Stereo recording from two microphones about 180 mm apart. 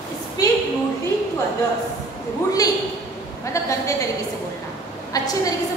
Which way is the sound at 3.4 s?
15° left (ahead or behind).